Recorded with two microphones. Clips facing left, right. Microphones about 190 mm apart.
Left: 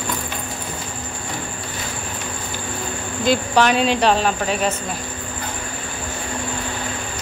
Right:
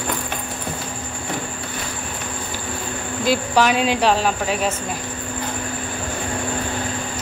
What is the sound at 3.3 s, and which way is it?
Speech, 5° right (ahead or behind).